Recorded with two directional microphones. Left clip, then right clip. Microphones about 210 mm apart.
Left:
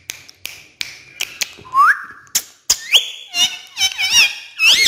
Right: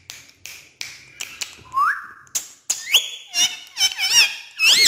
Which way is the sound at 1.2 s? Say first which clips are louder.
Left 8 dB; 25° left (ahead or behind).